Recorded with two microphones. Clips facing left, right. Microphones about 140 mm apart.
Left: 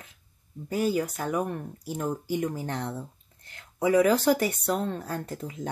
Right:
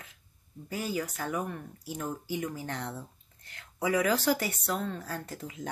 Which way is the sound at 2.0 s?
55° left (ahead or behind).